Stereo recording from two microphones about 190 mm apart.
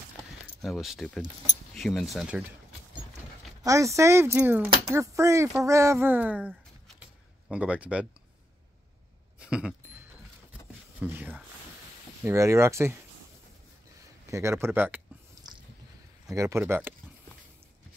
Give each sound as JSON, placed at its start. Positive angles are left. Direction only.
{"t": 0.6, "sound": "speech", "side_deg": 0}
{"t": 3.6, "sound": "speech", "side_deg": -15}
{"t": 9.4, "sound": "a sound", "side_deg": -5}
{"t": 11.0, "sound": "speech", "side_deg": -10}
{"t": 14.3, "sound": "speech", "side_deg": -15}
{"t": 16.3, "sound": "speech", "side_deg": -15}